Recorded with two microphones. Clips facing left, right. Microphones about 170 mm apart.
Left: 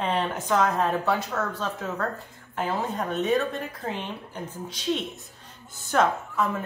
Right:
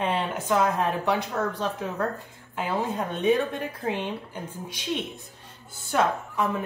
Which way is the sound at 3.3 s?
15° right (ahead or behind).